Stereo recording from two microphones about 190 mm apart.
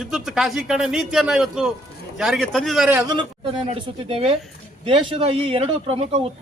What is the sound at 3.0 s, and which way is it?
Speech, 25° right (ahead or behind).